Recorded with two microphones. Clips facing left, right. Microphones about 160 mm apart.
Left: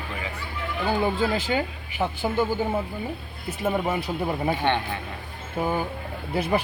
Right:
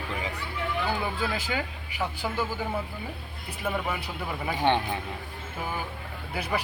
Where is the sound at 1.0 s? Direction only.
25° left (ahead or behind).